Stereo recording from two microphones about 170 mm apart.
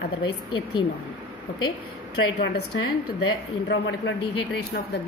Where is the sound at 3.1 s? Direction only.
85° left.